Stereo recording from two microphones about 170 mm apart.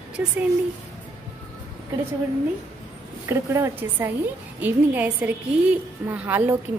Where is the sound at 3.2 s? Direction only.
15° right (ahead or behind).